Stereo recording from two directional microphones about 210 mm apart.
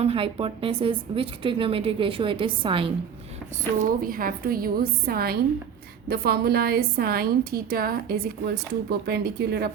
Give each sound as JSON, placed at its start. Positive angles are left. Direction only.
{"t": 0.0, "sound": "a woman's voice", "side_deg": -30}
{"t": 4.0, "sound": "a woman's voice", "side_deg": -40}